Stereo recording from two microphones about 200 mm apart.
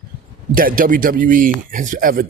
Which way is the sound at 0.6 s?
45° right (ahead or behind).